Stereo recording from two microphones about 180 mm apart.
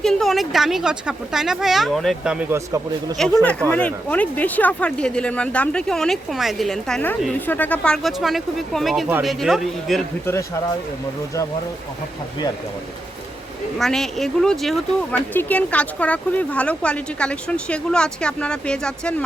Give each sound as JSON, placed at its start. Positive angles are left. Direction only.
{"t": 0.0, "sound": "speech", "side_deg": 0}
{"t": 3.2, "sound": "speech", "side_deg": 5}
{"t": 10.2, "sound": "speech", "side_deg": 15}
{"t": 13.7, "sound": "speech", "side_deg": 0}